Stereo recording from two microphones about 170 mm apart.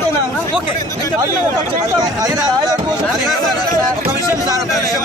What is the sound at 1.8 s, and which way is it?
Speech, 25° right (ahead or behind).